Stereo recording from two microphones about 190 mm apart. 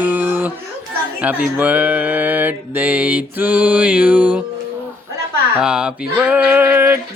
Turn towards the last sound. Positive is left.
turn(degrees=-10)  # may be behind; listen again after turning